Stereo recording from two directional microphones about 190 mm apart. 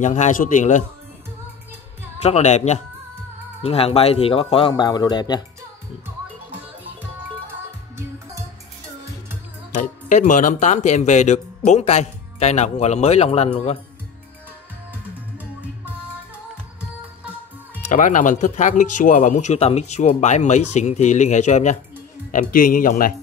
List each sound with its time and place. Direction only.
0.0 s speech: 40° left (ahead or behind)
2.2 s a man's voice: 35° left (ahead or behind)
9.8 s speech: 40° left (ahead or behind)
15.3 s music: 10° right (ahead or behind)
17.8 s speech: 40° left (ahead or behind)